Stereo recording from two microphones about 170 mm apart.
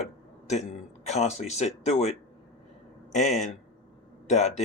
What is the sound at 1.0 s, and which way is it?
Speech, 40° left (ahead or behind).